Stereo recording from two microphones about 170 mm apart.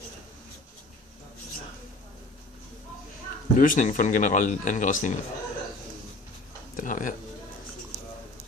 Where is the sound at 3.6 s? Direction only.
50° left (ahead or behind).